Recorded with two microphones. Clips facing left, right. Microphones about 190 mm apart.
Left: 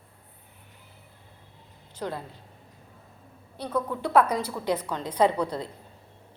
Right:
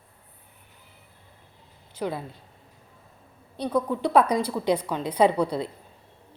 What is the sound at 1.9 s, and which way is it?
Speech, 10° right (ahead or behind).